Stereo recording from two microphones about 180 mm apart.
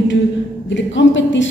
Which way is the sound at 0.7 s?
90° left.